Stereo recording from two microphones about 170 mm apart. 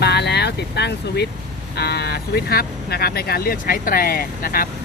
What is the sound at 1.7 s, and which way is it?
Speech, 70° left (ahead or behind).